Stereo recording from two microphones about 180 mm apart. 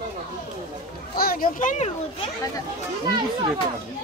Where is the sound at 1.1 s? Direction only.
55° left (ahead or behind).